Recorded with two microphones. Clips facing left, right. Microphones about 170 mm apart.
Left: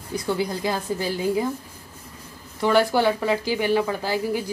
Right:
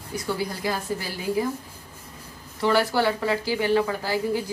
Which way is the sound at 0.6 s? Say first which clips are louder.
Left 1 dB; 20° left (ahead or behind).